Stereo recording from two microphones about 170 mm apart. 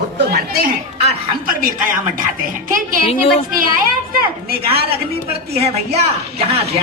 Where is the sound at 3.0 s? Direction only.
35° left (ahead or behind).